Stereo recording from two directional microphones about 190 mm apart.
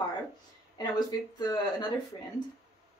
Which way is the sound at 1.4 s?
20° left (ahead or behind).